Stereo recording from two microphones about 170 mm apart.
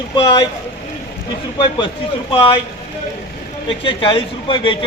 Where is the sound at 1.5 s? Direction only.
30° left (ahead or behind).